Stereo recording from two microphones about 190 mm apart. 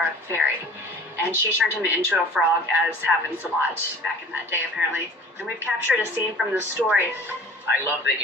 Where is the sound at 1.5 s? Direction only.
10° right (ahead or behind).